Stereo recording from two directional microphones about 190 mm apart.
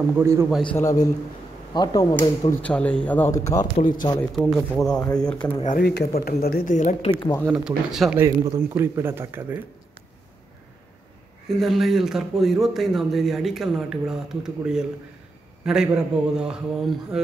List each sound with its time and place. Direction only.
0.2 s a man's voice: 15° right (ahead or behind)
0.5 s speech: 5° left (ahead or behind)
0.7 s speech: 15° left (ahead or behind)
2.1 s speech: 10° left (ahead or behind)
4.4 s speech: centre (ahead or behind)
4.9 s speech: 20° left (ahead or behind)
5.4 s speech: 5° left (ahead or behind)
5.8 s speech: 55° left (ahead or behind); by 7.1 s 40° left (ahead or behind)
7.5 s speech: centre (ahead or behind)
8.2 s a man's voice: 15° right (ahead or behind)
11.4 s a man's voice: centre (ahead or behind)